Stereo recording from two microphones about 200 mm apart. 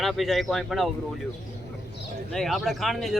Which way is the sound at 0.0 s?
Centre (ahead or behind).